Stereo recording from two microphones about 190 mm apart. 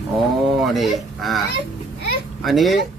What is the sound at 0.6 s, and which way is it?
Speech, centre (ahead or behind).